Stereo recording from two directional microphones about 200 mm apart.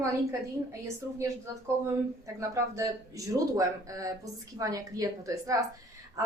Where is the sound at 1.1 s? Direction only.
15° right (ahead or behind).